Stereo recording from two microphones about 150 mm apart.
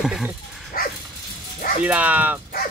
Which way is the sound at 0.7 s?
75° left (ahead or behind).